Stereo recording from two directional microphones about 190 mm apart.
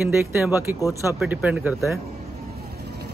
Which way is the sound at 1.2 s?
5° right (ahead or behind).